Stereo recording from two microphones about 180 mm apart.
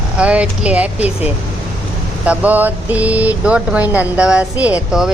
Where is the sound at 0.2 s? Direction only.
5° right (ahead or behind).